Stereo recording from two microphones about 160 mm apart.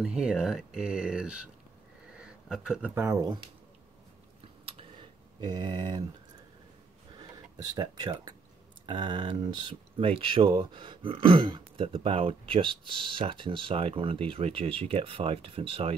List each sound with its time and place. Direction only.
0.0 s speech: 5° right (ahead or behind)
2.1 s a sound: 5° right (ahead or behind)
2.9 s speech: 15° right (ahead or behind)
4.6 s typing: 35° right (ahead or behind)
7.2 s speech: 25° right (ahead or behind)